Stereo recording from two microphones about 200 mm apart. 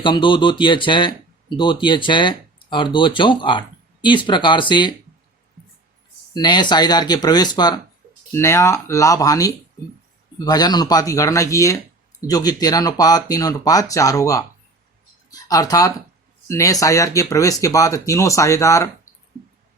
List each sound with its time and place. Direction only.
0.0 s speech: 25° left (ahead or behind)
6.3 s speech: 20° left (ahead or behind)